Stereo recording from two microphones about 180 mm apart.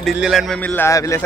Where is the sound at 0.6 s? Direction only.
10° left (ahead or behind).